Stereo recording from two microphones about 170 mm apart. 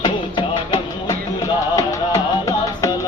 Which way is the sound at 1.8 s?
20° left (ahead or behind).